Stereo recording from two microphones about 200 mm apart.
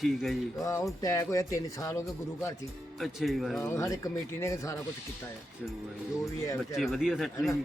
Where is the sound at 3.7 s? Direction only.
15° left (ahead or behind).